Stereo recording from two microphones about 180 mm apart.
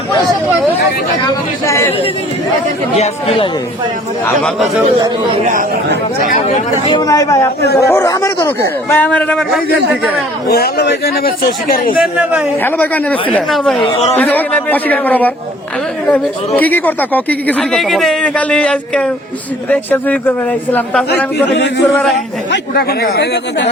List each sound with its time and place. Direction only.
1.2 s speech: 15° left (ahead or behind)
2.9 s speech: 35° left (ahead or behind)
4.4 s speech: centre (ahead or behind)
6.5 s a man's voice: 30° left (ahead or behind); by 10.2 s 5° right (ahead or behind)
10.5 s speech: 60° left (ahead or behind)
11.9 s a man's voice: 5° right (ahead or behind)
12.6 s speech: 10° left (ahead or behind)
16.6 s speech: 10° left (ahead or behind)
21.4 s a man's voice: 70° left (ahead or behind)
22.5 s speech: 60° left (ahead or behind)